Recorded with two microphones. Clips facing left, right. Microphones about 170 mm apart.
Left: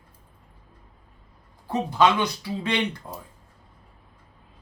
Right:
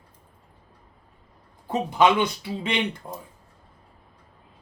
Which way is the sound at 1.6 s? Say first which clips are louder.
Right 1 dB; 20° right (ahead or behind).